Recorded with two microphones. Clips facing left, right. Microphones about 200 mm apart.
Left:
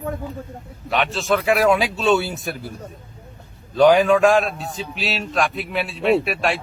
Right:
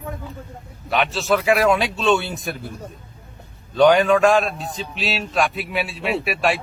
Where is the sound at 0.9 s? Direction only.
Centre (ahead or behind).